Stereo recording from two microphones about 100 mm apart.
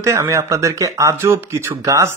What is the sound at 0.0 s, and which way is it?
Speech, 30° right (ahead or behind).